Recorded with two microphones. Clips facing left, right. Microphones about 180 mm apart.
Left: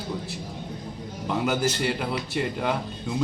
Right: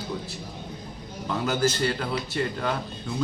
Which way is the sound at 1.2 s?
15° left (ahead or behind).